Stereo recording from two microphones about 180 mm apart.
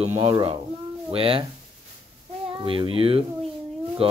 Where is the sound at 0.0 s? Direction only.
35° right (ahead or behind).